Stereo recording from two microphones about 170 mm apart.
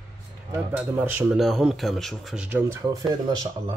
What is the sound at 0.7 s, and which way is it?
Speech, 10° right (ahead or behind).